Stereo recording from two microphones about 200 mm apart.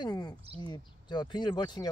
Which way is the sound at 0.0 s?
20° left (ahead or behind).